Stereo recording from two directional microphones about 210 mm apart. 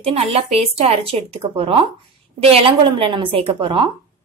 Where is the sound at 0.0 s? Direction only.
30° right (ahead or behind).